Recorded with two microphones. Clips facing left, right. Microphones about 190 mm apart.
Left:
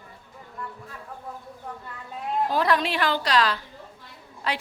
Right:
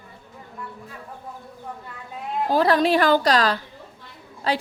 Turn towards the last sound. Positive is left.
turn(degrees=-35)  # may be behind; listen again after turning